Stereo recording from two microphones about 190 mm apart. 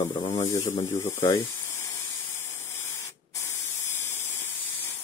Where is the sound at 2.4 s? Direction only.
15° left (ahead or behind).